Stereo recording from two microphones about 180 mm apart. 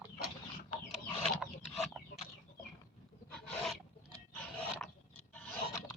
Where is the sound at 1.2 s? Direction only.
Centre (ahead or behind).